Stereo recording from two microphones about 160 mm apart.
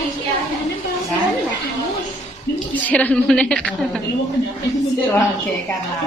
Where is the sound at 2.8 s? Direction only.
10° left (ahead or behind).